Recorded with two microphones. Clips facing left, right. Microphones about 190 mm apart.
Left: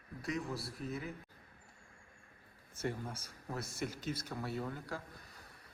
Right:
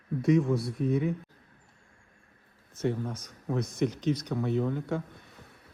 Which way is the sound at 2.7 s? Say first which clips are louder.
Right 9 dB; 10° left (ahead or behind).